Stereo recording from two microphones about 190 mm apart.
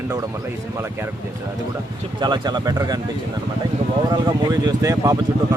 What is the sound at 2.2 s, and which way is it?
Speech, 20° right (ahead or behind).